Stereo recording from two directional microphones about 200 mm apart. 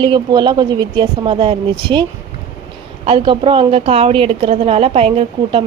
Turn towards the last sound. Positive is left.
turn(degrees=-25)  # may be behind; listen again after turning